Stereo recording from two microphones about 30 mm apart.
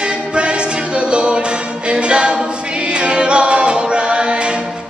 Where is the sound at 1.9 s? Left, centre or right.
Right.